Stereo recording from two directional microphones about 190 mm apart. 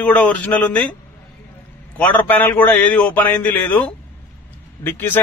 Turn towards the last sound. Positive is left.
turn(degrees=10)  # may be behind; listen again after turning